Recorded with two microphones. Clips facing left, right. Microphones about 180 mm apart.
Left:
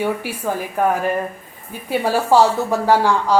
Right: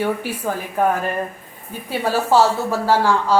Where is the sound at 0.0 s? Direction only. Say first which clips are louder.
Even; 10° left (ahead or behind).